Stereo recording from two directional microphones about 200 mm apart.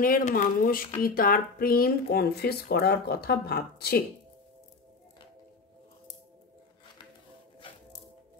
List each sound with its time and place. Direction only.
0.0 s speech: 45° left (ahead or behind)